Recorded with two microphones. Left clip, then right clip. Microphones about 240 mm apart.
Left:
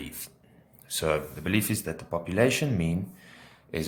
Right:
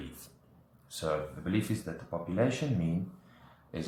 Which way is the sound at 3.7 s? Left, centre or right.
Left.